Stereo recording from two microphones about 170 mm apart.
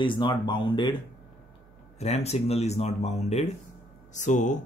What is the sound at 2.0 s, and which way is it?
Speech, 40° left (ahead or behind).